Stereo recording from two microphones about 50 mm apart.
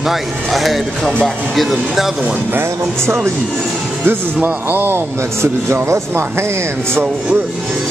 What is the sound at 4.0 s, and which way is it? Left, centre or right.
A man's voice, right.